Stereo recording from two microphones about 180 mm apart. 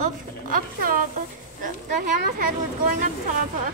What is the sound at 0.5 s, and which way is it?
A woman's voice, 50° right (ahead or behind).